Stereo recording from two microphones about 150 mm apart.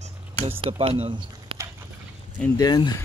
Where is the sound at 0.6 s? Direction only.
40° right (ahead or behind).